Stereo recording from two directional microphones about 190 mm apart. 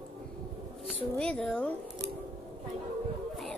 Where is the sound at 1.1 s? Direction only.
5° left (ahead or behind).